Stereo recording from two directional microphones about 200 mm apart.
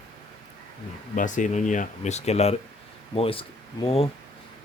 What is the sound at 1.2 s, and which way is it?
Speech, 40° left (ahead or behind).